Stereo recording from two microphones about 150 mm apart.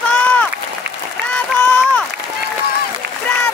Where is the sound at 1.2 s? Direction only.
10° left (ahead or behind).